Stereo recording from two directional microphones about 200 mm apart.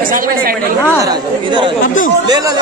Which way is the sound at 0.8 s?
20° right (ahead or behind).